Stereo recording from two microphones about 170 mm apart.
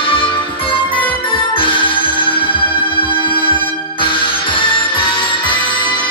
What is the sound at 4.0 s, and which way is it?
Music, 30° left (ahead or behind).